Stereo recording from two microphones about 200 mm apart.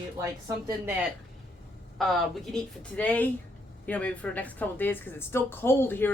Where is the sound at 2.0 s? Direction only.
Centre (ahead or behind).